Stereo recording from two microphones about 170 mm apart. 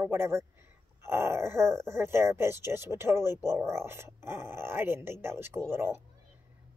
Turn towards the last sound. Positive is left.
turn(degrees=-15)  # may be behind; listen again after turning